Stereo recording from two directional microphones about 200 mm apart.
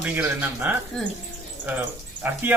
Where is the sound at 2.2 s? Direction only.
10° right (ahead or behind).